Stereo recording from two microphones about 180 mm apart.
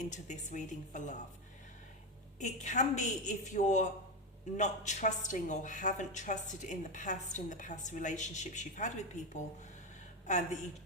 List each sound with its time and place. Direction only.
0.0 s speech: 45° left (ahead or behind)
2.4 s a woman's voice: 40° left (ahead or behind)